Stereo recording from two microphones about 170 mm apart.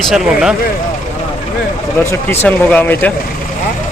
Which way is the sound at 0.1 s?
5° right (ahead or behind).